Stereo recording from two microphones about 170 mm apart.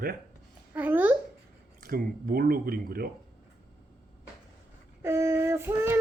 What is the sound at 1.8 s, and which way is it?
Speech, 60° right (ahead or behind).